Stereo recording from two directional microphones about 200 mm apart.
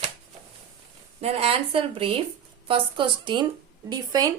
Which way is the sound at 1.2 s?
30° right (ahead or behind).